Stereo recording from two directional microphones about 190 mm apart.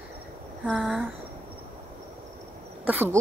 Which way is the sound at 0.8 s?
5° right (ahead or behind).